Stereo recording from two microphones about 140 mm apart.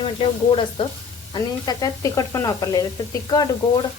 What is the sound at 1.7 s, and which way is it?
Speech, 25° left (ahead or behind).